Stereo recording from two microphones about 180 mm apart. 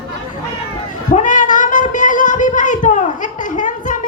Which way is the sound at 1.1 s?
45° left (ahead or behind).